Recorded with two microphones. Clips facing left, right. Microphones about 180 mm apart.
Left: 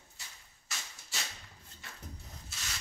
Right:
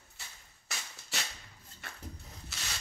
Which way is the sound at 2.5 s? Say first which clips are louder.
Right 3 dB; 70° right (ahead or behind).